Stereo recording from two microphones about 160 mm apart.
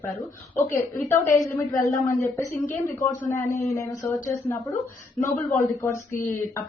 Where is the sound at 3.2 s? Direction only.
15° left (ahead or behind).